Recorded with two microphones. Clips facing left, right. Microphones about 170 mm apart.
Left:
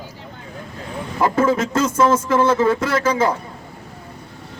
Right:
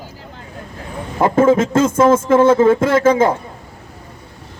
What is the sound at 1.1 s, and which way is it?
A man's voice, 45° right (ahead or behind).